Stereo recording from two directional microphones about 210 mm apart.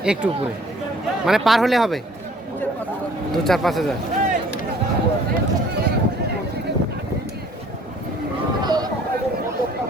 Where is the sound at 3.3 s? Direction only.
Centre (ahead or behind).